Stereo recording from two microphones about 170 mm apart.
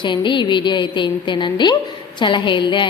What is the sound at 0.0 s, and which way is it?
A woman's voice, 25° left (ahead or behind).